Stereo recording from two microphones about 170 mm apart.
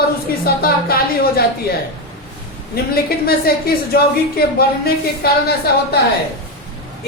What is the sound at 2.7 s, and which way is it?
A woman's voice, 65° left (ahead or behind).